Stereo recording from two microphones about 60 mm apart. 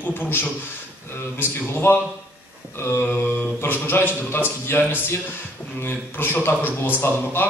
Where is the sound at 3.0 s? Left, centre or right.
Left.